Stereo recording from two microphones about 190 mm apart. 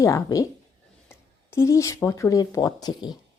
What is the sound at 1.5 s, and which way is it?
Speech, 15° left (ahead or behind).